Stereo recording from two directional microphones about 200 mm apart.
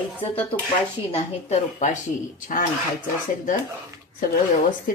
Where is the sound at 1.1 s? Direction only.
35° left (ahead or behind).